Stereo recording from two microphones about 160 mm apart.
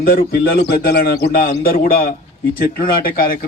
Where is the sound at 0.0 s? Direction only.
75° left (ahead or behind).